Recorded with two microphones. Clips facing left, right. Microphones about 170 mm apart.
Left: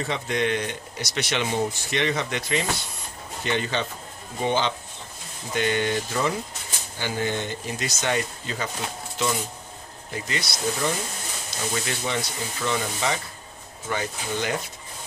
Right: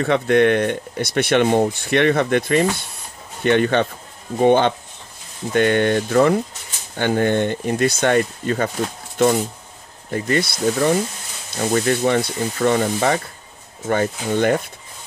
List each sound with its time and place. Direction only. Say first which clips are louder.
0.0 s speech: right 10 dB; 60° right (ahead or behind)